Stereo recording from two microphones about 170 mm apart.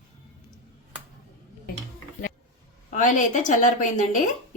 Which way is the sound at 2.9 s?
50° left (ahead or behind).